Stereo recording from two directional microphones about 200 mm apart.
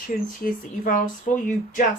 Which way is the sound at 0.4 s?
40° left (ahead or behind).